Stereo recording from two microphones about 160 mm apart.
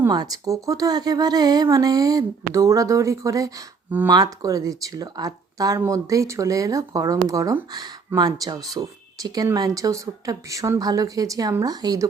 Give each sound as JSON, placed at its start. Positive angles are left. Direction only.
{"t": 0.1, "sound": "speech", "side_deg": -25}